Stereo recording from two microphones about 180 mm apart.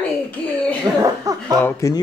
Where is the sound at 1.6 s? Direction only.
20° left (ahead or behind).